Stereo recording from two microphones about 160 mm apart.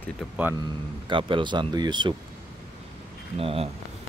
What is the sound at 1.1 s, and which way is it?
Speech, 30° right (ahead or behind).